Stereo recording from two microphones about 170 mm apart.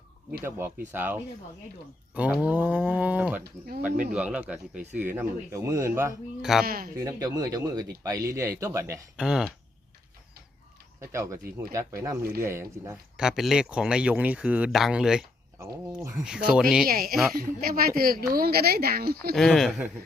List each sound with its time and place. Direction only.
0.4 s speech: 15° right (ahead or behind)
6.4 s speech: 5° right (ahead or behind)
6.7 s a woman's voice: 60° right (ahead or behind)
7.0 s speech: 20° right (ahead or behind)
9.1 s speech: 5° right (ahead or behind)
11.0 s speech: 15° right (ahead or behind)
13.1 s speech: 5° right (ahead or behind)
15.5 s speech: 15° right (ahead or behind)
16.1 s speech: 5° right (ahead or behind)
16.8 s a woman's voice: 60° right (ahead or behind)
19.3 s speech: centre (ahead or behind)